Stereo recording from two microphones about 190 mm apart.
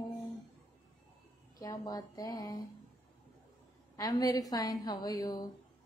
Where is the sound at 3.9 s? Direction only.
20° left (ahead or behind).